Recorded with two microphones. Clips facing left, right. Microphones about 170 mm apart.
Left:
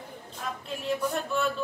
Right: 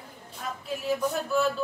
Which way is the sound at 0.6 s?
Centre (ahead or behind).